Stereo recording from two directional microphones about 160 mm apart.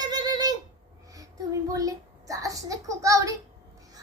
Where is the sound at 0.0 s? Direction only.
25° right (ahead or behind).